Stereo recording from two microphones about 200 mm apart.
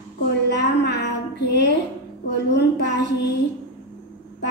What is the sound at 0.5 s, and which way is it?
A woman's voice, 55° left (ahead or behind).